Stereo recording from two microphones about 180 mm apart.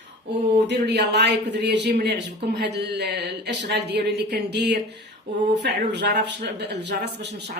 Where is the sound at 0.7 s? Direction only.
70° right (ahead or behind).